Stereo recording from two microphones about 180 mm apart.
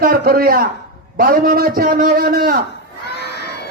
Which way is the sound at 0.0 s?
55° right (ahead or behind).